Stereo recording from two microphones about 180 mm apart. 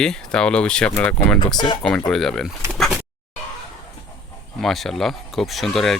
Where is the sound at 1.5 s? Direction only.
25° left (ahead or behind).